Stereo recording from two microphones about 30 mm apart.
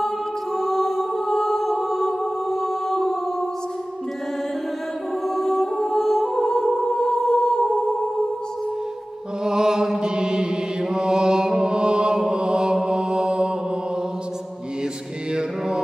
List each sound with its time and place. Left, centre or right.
0.6 s music: centre
5.3 s music: centre
6.3 s music: centre
9.4 s mantra: right